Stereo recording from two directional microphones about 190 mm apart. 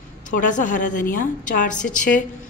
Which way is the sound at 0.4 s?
45° left (ahead or behind).